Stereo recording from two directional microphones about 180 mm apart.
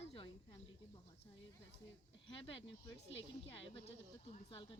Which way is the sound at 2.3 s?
30° left (ahead or behind).